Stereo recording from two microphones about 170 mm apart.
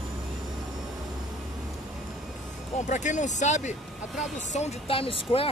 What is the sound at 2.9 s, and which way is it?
Speech, 45° left (ahead or behind).